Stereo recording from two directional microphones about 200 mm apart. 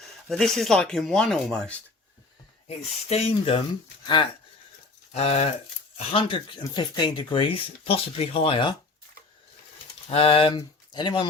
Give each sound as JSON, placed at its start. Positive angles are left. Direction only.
{"t": 0.3, "sound": "speech", "side_deg": 0}
{"t": 2.6, "sound": "speech", "side_deg": 30}
{"t": 10.1, "sound": "speech", "side_deg": 30}